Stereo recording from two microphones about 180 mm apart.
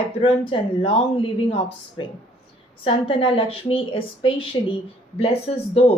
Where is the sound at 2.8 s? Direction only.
30° left (ahead or behind).